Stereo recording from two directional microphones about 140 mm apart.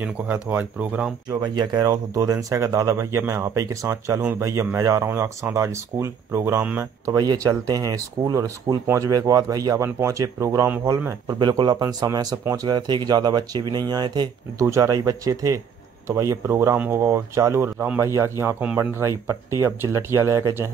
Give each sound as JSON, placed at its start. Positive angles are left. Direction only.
{"t": 0.0, "sound": "speech", "side_deg": -10}
{"t": 1.3, "sound": "speech", "side_deg": -30}